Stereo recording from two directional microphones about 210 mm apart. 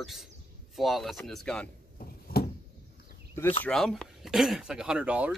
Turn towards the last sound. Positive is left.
turn(degrees=-5)  # may be behind; listen again after turning